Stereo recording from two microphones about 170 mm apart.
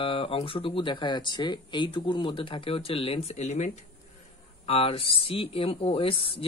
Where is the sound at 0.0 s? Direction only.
30° left (ahead or behind).